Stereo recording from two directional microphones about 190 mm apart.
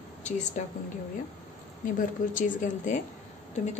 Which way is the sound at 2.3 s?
40° left (ahead or behind).